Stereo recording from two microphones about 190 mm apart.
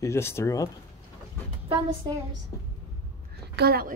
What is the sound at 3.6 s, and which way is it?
Speech, 55° right (ahead or behind).